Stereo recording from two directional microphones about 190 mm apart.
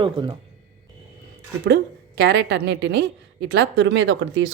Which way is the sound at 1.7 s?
60° right (ahead or behind).